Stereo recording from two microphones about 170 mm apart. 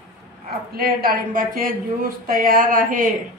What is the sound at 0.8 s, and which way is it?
Speech, 60° right (ahead or behind).